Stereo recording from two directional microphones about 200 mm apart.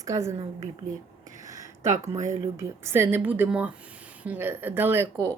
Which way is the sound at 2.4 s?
15° right (ahead or behind).